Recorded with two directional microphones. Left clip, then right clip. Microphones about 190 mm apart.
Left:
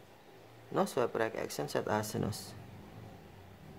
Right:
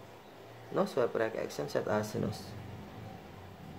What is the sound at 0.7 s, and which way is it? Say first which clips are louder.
Speech: right 1 dB; 25° left (ahead or behind).